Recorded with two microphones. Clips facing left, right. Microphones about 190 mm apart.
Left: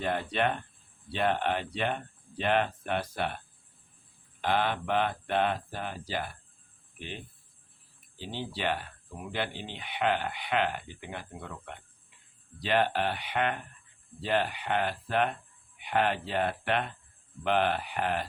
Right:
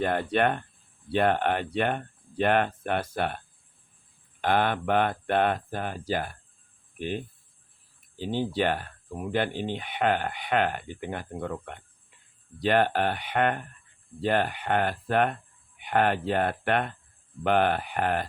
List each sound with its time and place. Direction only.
0.0 s speech: 50° right (ahead or behind)
8.2 s speech: 50° right (ahead or behind)